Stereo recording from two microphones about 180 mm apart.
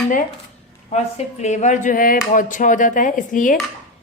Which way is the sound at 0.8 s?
35° left (ahead or behind).